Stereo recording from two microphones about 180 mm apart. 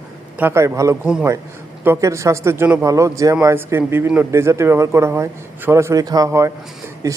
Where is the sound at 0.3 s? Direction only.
15° right (ahead or behind).